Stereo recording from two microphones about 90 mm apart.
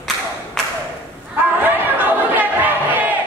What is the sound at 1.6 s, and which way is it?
Chatter, 20° right (ahead or behind).